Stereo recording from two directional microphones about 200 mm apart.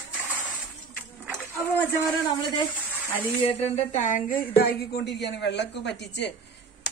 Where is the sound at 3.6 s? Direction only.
35° left (ahead or behind).